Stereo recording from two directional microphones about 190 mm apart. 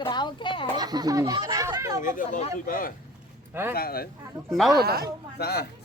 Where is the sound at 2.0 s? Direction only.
45° left (ahead or behind).